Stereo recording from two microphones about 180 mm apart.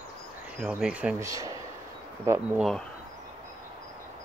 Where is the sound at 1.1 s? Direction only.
20° right (ahead or behind).